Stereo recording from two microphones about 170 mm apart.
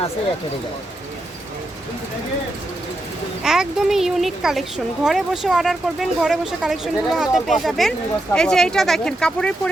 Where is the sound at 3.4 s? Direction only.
5° right (ahead or behind).